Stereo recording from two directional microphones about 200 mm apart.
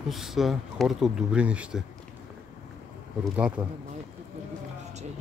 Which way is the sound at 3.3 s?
5° right (ahead or behind).